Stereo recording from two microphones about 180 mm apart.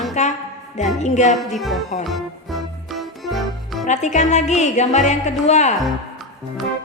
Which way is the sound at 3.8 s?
40° left (ahead or behind).